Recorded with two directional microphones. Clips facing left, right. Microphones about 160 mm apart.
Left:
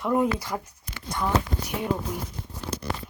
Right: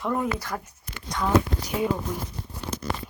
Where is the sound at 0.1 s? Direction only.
10° left (ahead or behind).